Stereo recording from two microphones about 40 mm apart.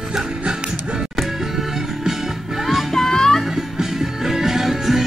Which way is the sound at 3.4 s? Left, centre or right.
Centre.